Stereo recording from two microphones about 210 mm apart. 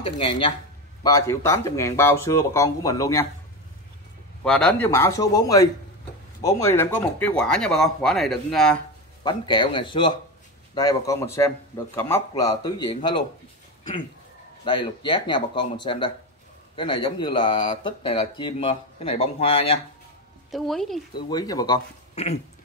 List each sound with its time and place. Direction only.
0.0 s speech: 25° left (ahead or behind)
4.4 s speech: 5° left (ahead or behind)
9.2 s speech: 20° left (ahead or behind)
14.6 s speech: 25° left (ahead or behind)
20.5 s speech: centre (ahead or behind)
21.3 s speech: 20° left (ahead or behind)
22.1 s speech: 30° left (ahead or behind)